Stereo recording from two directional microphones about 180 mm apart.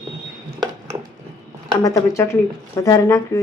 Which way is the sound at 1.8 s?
15° left (ahead or behind).